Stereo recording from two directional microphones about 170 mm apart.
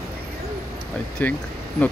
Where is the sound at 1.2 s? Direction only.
10° left (ahead or behind).